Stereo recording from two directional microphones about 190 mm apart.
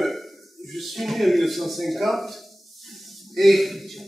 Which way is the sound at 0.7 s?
Centre (ahead or behind).